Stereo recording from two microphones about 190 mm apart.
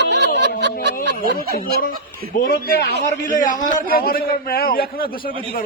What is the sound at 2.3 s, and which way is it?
Speech, 50° left (ahead or behind).